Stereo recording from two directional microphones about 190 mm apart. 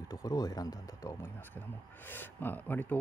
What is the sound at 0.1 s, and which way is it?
Speech, 20° left (ahead or behind).